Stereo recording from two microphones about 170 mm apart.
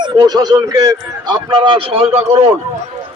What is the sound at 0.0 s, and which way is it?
A man's voice, 25° right (ahead or behind).